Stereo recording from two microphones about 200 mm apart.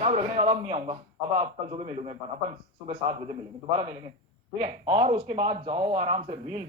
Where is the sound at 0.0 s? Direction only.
30° right (ahead or behind).